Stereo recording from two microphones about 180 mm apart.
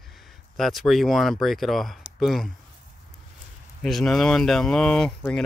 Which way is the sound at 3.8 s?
Centre (ahead or behind).